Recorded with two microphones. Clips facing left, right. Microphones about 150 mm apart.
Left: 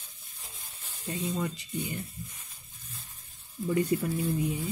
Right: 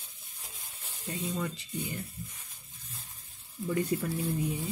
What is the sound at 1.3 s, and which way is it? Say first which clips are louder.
Speech: left 2 dB; 15° left (ahead or behind).